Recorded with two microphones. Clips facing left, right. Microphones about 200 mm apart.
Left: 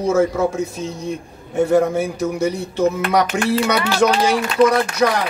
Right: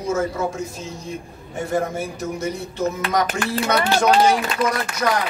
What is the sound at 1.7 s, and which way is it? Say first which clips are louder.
Speech: left 5 dB; 70° left (ahead or behind).